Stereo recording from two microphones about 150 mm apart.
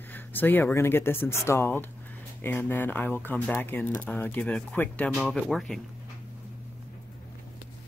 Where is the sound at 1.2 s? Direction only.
15° left (ahead or behind).